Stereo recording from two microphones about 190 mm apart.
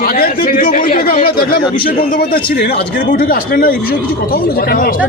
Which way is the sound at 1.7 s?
50° left (ahead or behind).